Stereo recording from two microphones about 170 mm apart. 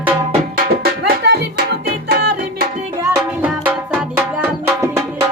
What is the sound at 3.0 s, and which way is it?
Music, 15° right (ahead or behind).